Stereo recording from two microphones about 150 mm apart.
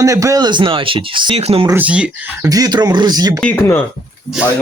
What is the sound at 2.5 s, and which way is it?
Speech, 25° right (ahead or behind).